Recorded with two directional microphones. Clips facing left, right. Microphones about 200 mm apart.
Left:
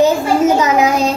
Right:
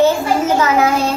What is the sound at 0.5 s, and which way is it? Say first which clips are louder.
Speech: left 1 dB; 15° left (ahead or behind).